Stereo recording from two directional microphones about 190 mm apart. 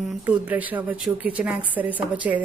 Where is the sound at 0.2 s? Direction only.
10° right (ahead or behind).